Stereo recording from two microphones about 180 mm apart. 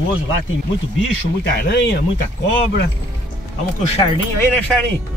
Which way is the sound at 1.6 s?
70° left (ahead or behind).